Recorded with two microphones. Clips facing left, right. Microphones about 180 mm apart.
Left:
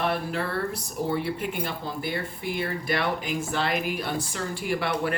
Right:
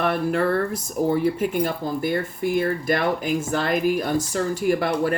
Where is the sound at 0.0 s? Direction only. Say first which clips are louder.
Right 6 dB; 55° right (ahead or behind).